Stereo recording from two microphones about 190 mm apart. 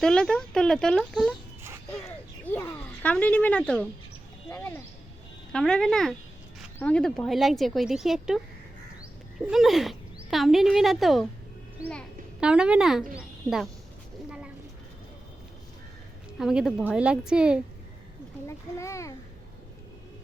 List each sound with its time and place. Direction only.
0.0 s speech: 5° left (ahead or behind)
2.0 s a sound: 10° left (ahead or behind)
4.4 s a child's voice: 15° left (ahead or behind); by 8.4 s centre (ahead or behind)
9.5 s a child's voice: centre (ahead or behind)
14.3 s a sound: 5° right (ahead or behind)
16.4 s speech: centre (ahead or behind)
18.4 s a child's voice: 15° left (ahead or behind)